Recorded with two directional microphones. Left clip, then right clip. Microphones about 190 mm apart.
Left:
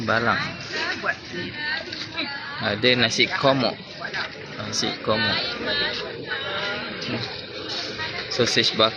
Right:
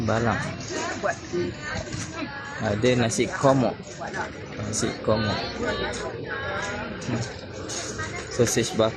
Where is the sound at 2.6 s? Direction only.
10° right (ahead or behind).